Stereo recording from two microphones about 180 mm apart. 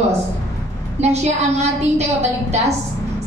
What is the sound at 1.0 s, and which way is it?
A woman's voice, 35° right (ahead or behind).